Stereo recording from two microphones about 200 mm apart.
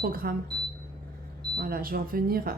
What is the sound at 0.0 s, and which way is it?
Speech, 45° right (ahead or behind).